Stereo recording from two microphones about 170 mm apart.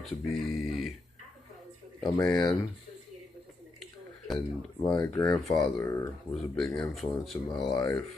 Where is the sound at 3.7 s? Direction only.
Centre (ahead or behind).